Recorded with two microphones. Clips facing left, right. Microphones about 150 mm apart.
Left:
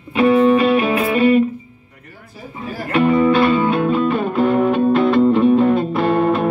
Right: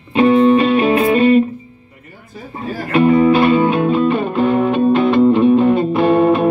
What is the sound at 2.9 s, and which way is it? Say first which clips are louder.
Music: right 3 dB; 25° right (ahead or behind).